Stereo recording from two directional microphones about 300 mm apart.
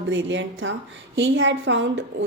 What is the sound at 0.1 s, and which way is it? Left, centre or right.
A woman's voice, right.